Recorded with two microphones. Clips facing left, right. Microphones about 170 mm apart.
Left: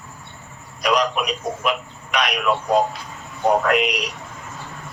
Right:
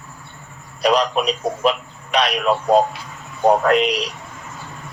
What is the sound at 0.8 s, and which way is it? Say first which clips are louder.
Speech: right 3 dB; 30° right (ahead or behind).